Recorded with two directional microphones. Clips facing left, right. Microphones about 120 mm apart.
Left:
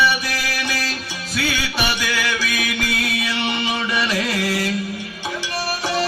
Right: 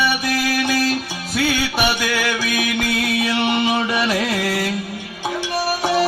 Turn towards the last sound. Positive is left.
turn(degrees=-50)  # may be behind; listen again after turning